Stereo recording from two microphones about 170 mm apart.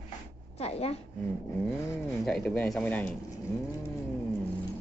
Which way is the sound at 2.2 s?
5° left (ahead or behind).